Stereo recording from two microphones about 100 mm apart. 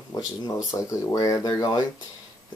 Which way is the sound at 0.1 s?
35° left (ahead or behind).